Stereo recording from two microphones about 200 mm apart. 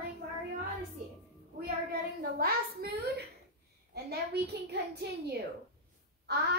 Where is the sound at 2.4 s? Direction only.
50° right (ahead or behind).